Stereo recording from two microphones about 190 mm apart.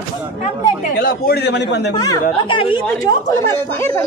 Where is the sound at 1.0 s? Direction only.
50° left (ahead or behind).